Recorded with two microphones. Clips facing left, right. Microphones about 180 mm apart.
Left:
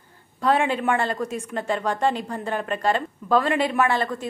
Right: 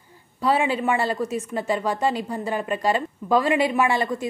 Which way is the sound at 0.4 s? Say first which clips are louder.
Even; 10° right (ahead or behind).